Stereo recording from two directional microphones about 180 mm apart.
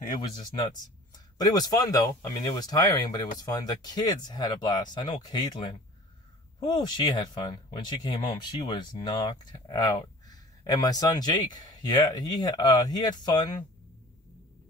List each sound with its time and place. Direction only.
1.4 s speech: 20° left (ahead or behind)
6.8 s speech: 25° left (ahead or behind)